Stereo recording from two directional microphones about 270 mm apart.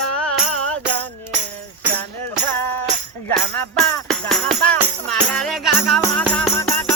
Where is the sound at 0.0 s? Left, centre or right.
Centre.